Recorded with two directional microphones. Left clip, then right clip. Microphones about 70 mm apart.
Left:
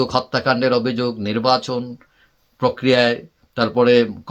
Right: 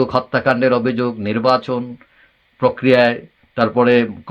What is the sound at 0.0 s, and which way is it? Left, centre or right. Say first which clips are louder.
Speech: right 3 dB; left.